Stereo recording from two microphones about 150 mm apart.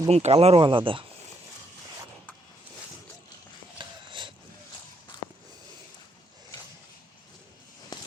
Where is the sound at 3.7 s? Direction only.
30° right (ahead or behind).